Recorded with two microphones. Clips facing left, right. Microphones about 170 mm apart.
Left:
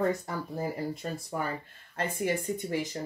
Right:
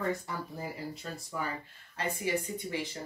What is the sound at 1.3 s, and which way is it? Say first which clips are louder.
Speech: even; 50° left (ahead or behind).